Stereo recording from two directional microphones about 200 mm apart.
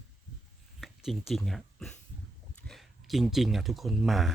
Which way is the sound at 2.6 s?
Centre (ahead or behind).